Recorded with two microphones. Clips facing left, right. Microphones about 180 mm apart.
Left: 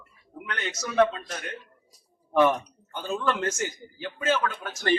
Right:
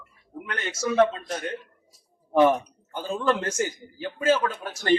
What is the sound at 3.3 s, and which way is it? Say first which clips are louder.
A man's voice: right 4 dB; 35° right (ahead or behind).